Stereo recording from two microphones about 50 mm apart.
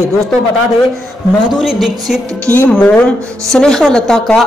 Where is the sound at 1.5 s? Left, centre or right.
Centre.